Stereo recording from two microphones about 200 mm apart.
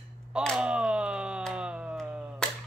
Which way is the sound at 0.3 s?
Centre (ahead or behind).